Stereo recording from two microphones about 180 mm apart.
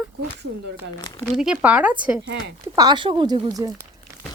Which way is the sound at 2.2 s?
75° right (ahead or behind).